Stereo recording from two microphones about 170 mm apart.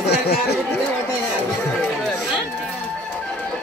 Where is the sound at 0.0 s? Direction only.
70° left (ahead or behind).